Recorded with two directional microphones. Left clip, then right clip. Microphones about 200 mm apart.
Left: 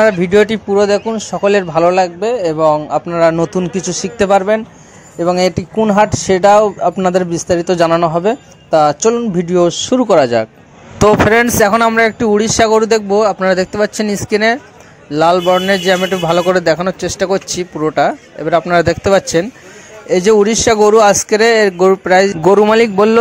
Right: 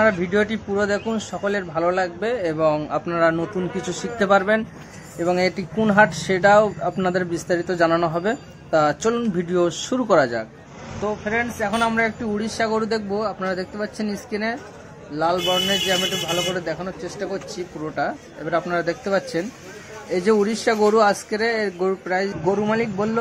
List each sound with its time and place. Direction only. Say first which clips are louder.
0.0 s a man's voice: left 9 dB; 35° left (ahead or behind); by 3.2 s 20° left (ahead or behind)
3.2 s a man's voice: left 8 dB; 30° left (ahead or behind)
11.2 s a man's voice: left 13 dB; 55° left (ahead or behind)